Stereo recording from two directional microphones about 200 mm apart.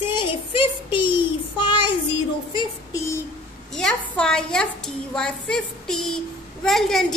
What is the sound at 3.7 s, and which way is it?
A woman's voice, 5° left (ahead or behind).